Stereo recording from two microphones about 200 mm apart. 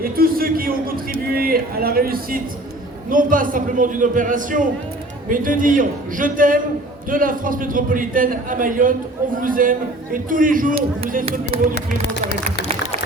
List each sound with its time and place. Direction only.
0.0 s a man's voice: 45° right (ahead or behind)